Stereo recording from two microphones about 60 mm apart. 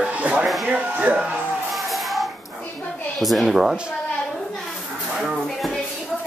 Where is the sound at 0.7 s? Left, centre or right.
Right.